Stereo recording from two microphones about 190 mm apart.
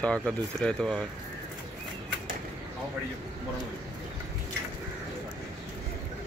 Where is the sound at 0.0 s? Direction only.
5° left (ahead or behind).